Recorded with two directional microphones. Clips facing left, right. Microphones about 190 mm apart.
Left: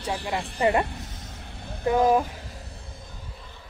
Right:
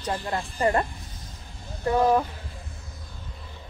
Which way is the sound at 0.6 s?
15° left (ahead or behind).